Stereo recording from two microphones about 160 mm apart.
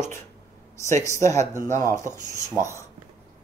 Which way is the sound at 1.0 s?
20° left (ahead or behind).